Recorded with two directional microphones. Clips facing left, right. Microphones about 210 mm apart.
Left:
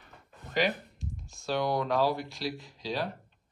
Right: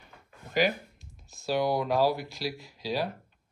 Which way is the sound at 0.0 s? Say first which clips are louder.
Even; 5° right (ahead or behind).